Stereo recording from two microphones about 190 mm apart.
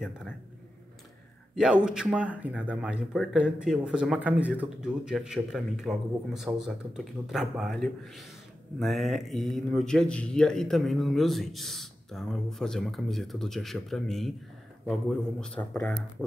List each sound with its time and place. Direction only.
1.5 s speech: 5° right (ahead or behind)